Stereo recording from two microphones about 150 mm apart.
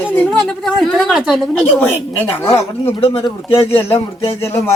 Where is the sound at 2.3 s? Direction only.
15° left (ahead or behind).